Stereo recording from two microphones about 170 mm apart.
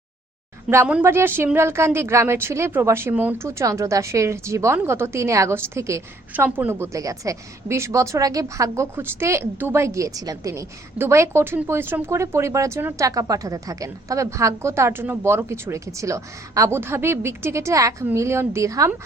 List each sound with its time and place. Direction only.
0.7 s a woman's voice: 10° right (ahead or behind)